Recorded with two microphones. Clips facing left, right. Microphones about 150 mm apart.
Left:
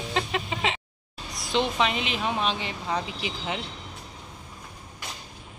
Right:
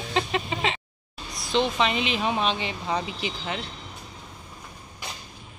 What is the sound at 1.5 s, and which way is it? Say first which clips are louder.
Speech: right 1 dB; 5° left (ahead or behind).